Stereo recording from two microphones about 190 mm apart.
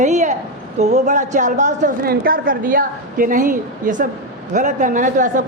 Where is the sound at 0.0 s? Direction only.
40° right (ahead or behind).